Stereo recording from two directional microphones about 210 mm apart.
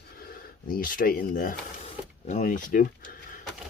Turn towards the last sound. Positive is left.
turn(degrees=40)  # may be behind; listen again after turning